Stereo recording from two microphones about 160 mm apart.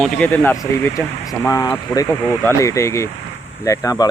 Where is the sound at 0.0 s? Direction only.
5° left (ahead or behind).